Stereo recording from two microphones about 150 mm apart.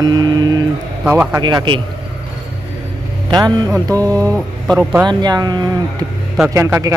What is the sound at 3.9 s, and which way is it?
Speech, 10° left (ahead or behind).